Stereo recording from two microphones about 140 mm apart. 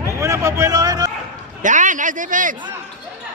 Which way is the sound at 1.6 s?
65° right (ahead or behind).